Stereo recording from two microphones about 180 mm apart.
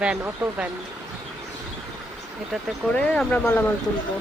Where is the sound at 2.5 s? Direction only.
5° left (ahead or behind).